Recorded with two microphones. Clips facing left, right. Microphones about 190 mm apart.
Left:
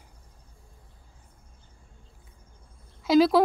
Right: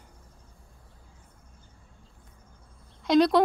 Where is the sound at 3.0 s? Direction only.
5° left (ahead or behind).